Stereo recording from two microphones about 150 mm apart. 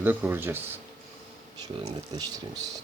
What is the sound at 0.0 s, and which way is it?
Speech, 15° right (ahead or behind).